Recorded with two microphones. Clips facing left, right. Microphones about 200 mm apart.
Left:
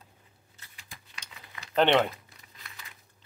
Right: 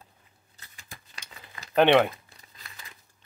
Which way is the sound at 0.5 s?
45° right (ahead or behind).